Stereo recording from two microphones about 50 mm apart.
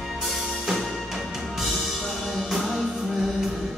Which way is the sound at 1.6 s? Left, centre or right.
Centre.